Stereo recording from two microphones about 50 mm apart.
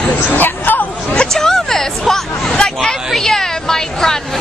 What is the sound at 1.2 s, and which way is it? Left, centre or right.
Music, centre.